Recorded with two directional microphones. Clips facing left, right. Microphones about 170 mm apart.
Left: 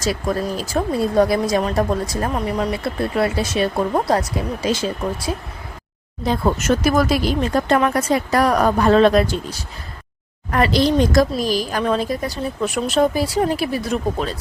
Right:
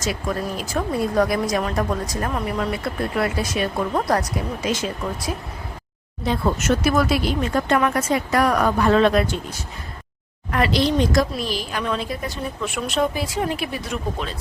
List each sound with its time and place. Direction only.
0.0 s a woman's voice: 35° left (ahead or behind)